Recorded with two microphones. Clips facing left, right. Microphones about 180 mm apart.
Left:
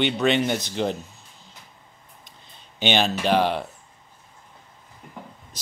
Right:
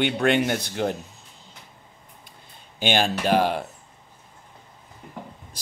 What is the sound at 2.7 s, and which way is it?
Speech, 10° right (ahead or behind).